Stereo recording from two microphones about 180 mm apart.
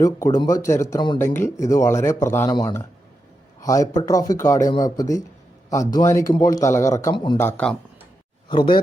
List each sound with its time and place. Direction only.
0.0 s speech: 20° left (ahead or behind)
1.2 s speech: 15° left (ahead or behind)
7.3 s speech: 10° left (ahead or behind)
8.4 s speech: 25° left (ahead or behind)